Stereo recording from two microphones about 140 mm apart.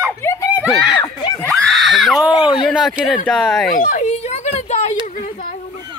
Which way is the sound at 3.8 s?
65° left (ahead or behind).